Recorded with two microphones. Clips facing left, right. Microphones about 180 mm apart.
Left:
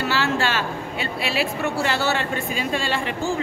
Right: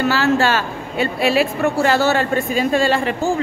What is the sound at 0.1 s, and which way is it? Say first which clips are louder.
A woman's voice: right 6 dB; 45° right (ahead or behind).